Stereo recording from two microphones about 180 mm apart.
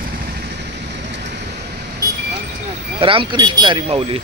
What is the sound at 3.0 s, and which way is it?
Speech, 30° right (ahead or behind).